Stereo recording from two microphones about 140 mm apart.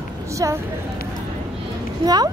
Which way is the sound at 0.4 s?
25° right (ahead or behind).